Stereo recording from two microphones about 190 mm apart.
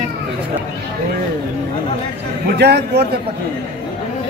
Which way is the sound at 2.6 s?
60° right (ahead or behind).